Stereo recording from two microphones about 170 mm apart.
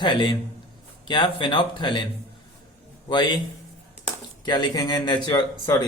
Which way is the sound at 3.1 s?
25° left (ahead or behind).